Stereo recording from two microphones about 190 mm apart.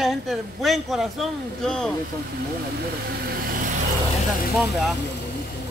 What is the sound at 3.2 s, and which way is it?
Vehicle, 50° right (ahead or behind).